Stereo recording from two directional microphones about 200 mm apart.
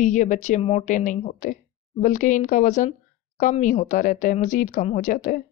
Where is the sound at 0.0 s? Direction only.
40° left (ahead or behind).